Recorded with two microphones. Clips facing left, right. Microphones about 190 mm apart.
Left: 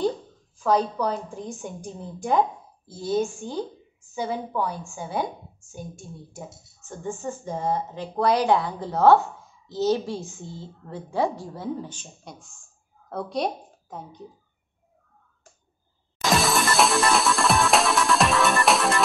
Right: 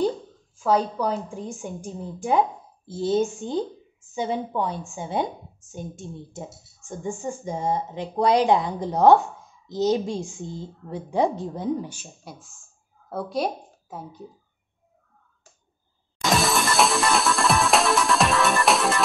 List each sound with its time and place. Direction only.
0.6 s speech: 10° right (ahead or behind)
2.9 s a woman's voice: 25° right (ahead or behind); by 14.2 s 5° right (ahead or behind)
16.2 s music: centre (ahead or behind)